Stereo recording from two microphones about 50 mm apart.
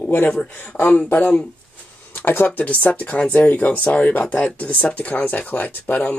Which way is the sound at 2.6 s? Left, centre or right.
Left.